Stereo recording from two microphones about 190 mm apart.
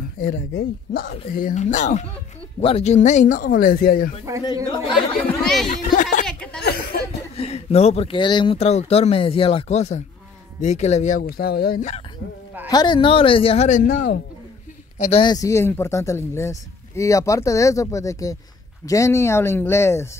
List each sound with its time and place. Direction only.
0.3 s speech: 50° left (ahead or behind)
4.6 s speech: 25° left (ahead or behind)
5.4 s a sound: centre (ahead or behind)
5.9 s speech: 40° left (ahead or behind)
6.2 s a sound: 5° left (ahead or behind)
6.6 s speech: 55° left (ahead or behind)
7.3 s speech: 35° left (ahead or behind); by 11.8 s 55° left (ahead or behind)
12.6 s speech: 20° left (ahead or behind); by 14.2 s 45° left (ahead or behind)
15.0 s speech: 25° left (ahead or behind)